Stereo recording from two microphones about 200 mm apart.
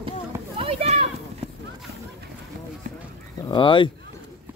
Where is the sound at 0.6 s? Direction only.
30° right (ahead or behind).